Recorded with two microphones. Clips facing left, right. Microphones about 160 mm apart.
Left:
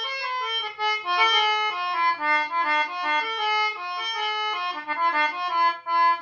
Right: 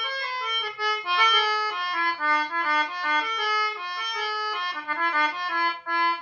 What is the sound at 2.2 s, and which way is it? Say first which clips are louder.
Accordion: left 1 dB; 25° left (ahead or behind).